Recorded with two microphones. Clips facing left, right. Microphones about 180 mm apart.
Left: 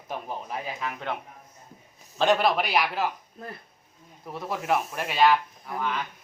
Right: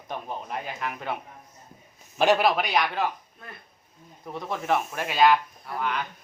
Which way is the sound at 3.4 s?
35° left (ahead or behind).